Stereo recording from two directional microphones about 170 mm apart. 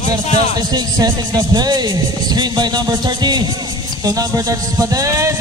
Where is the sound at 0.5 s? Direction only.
25° right (ahead or behind).